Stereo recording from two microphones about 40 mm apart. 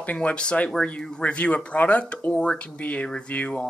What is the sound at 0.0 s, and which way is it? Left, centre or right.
Speech, left.